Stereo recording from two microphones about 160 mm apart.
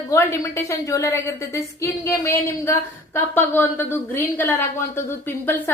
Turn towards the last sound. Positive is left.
turn(degrees=10)  # may be behind; listen again after turning